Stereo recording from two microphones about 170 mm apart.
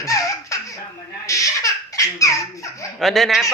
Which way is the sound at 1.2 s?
20° left (ahead or behind).